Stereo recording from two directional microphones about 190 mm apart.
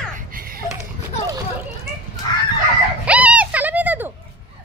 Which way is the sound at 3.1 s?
5° right (ahead or behind).